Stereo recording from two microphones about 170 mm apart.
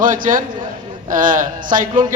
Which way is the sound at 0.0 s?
50° right (ahead or behind).